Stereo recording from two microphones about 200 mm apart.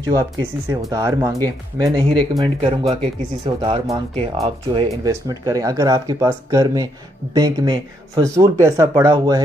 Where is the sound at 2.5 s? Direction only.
30° right (ahead or behind).